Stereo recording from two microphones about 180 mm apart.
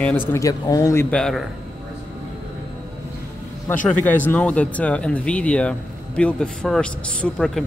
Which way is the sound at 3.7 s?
10° left (ahead or behind).